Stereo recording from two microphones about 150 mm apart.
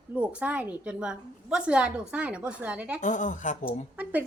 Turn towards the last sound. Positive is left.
turn(degrees=-10)  # may be behind; listen again after turning